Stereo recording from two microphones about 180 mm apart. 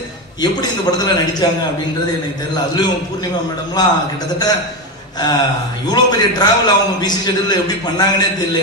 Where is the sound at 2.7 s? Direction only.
25° left (ahead or behind).